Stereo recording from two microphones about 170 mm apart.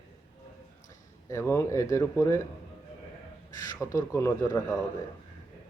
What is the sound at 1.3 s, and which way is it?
Speech, 15° left (ahead or behind).